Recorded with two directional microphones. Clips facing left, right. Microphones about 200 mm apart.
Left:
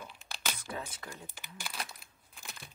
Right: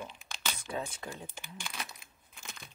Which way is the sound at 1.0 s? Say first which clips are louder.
Right 4 dB; 20° right (ahead or behind).